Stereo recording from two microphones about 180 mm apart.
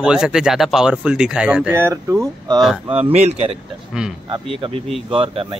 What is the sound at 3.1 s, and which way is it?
Speech, 35° right (ahead or behind).